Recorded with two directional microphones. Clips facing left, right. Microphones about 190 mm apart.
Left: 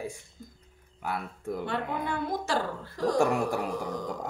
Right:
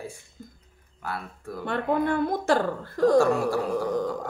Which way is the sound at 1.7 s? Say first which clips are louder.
Right 11 dB; 55° right (ahead or behind).